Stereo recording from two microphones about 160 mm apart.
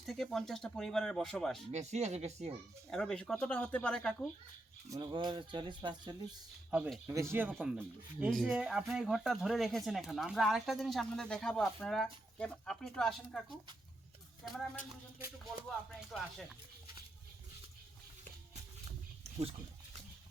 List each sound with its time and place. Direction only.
0.0 s speech: centre (ahead or behind)
1.7 s speech: 45° right (ahead or behind)
2.9 s speech: 5° left (ahead or behind)
4.9 s speech: 25° right (ahead or behind)
6.7 s speech: 10° right (ahead or behind)
15.9 s speech: centre (ahead or behind)